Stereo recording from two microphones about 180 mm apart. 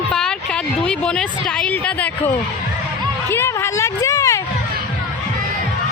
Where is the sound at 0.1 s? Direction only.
5° left (ahead or behind).